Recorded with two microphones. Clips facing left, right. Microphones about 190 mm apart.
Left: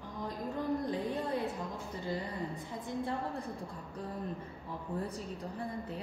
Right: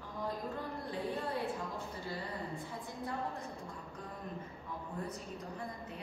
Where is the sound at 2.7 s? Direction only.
25° left (ahead or behind).